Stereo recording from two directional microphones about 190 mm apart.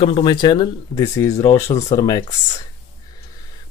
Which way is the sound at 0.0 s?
25° left (ahead or behind).